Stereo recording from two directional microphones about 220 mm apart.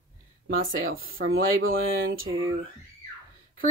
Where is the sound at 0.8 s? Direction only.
65° right (ahead or behind).